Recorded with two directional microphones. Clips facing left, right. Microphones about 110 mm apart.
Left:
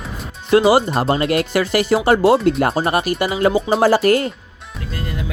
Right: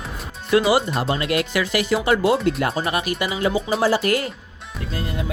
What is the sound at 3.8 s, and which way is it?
Speech, 50° left (ahead or behind).